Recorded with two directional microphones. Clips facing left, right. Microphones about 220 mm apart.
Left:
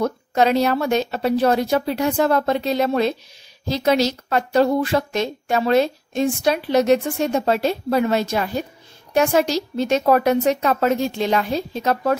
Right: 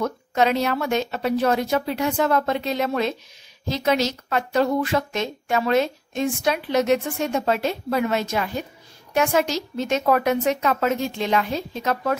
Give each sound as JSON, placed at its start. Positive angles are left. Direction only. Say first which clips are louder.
{"t": 0.0, "sound": "a woman's voice", "louder": "left 3 dB", "side_deg": 35}